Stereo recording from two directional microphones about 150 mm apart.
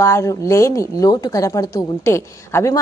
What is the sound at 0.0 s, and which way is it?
A woman's voice, 20° left (ahead or behind).